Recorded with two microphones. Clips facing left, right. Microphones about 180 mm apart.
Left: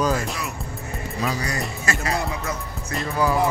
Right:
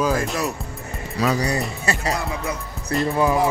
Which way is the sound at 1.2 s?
90° right.